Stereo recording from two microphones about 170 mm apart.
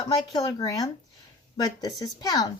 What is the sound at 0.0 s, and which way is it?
Speech, 25° left (ahead or behind).